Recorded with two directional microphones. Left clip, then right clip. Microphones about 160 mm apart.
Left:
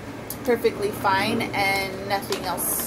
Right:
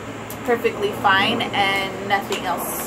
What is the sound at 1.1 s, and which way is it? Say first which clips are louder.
A woman's voice: right 5 dB; 10° left (ahead or behind).